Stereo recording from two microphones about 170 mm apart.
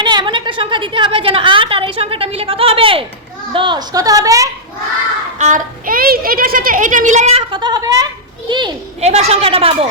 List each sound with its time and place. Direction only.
0.0 s a woman's voice: 25° right (ahead or behind)
5.4 s a child's voice: 50° right (ahead or behind)
7.5 s speech: 25° right (ahead or behind)
9.0 s a woman's voice: 40° right (ahead or behind)